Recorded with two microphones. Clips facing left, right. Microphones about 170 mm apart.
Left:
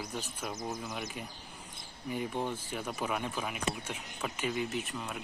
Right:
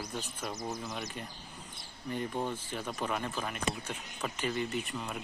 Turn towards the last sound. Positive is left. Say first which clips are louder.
# right 1 dB
turn(degrees=0)  # may be behind; listen again after turning